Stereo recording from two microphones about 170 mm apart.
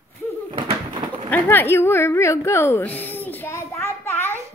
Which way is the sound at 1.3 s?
10° left (ahead or behind).